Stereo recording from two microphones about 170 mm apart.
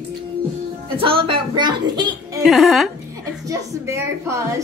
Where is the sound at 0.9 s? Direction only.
30° right (ahead or behind).